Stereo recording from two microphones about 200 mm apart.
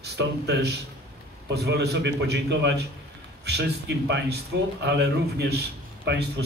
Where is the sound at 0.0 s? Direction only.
55° right (ahead or behind).